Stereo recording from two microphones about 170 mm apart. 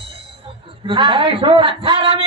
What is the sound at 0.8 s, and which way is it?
A man's voice, 30° right (ahead or behind).